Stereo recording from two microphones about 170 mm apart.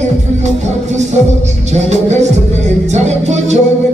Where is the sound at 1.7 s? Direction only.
40° right (ahead or behind).